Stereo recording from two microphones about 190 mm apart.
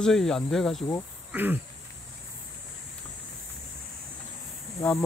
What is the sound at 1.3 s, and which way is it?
Speech, 10° right (ahead or behind).